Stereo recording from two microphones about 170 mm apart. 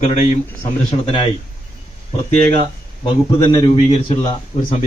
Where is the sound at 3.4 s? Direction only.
30° left (ahead or behind).